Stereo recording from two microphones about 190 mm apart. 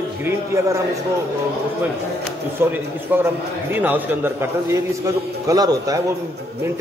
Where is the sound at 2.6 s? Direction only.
10° right (ahead or behind).